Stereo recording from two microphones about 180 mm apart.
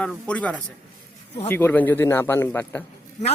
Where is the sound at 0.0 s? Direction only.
5° left (ahead or behind).